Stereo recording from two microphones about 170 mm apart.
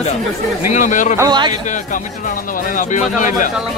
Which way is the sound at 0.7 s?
50° left (ahead or behind).